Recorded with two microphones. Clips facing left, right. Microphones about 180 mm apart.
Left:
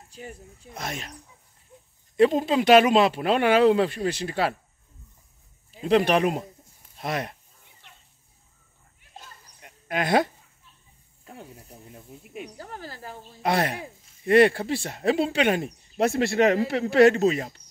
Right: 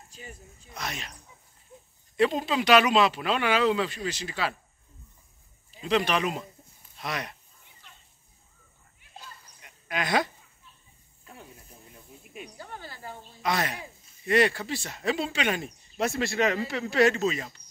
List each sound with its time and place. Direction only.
0.1 s speech: 60° left (ahead or behind)
2.1 s speech: 45° left (ahead or behind)
5.8 s speech: 55° left (ahead or behind)
9.2 s a sound: 45° left (ahead or behind)
11.3 s snake: 35° left (ahead or behind)
13.4 s speech: 60° left (ahead or behind)